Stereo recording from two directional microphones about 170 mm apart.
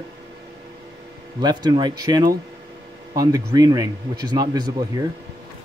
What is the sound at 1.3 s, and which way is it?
Speech, 25° right (ahead or behind).